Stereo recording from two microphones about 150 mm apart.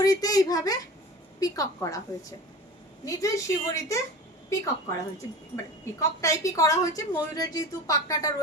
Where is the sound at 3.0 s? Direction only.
20° left (ahead or behind).